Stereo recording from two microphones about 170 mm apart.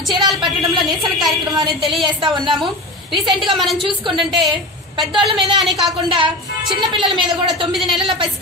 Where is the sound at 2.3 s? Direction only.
30° right (ahead or behind).